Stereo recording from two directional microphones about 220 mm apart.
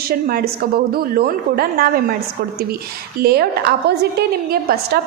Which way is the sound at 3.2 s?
45° right (ahead or behind).